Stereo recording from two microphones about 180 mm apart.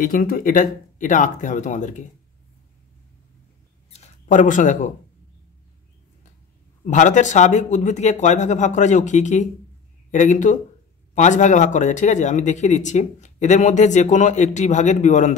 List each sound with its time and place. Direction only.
0.0 s speech: 50° left (ahead or behind)
3.9 s speech: 40° left (ahead or behind)
6.9 s speech: 45° left (ahead or behind)